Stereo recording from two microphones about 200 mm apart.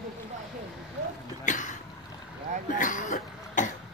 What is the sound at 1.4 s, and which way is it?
Cough, 40° left (ahead or behind).